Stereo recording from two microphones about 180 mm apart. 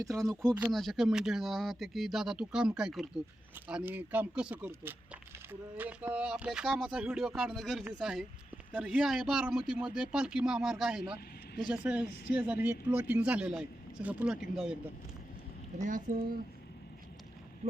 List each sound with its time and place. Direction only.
0.1 s a man's voice: centre (ahead or behind)
12.0 s speech: 65° left (ahead or behind)
12.3 s a man's voice: 10° right (ahead or behind)
15.8 s speech: 45° right (ahead or behind)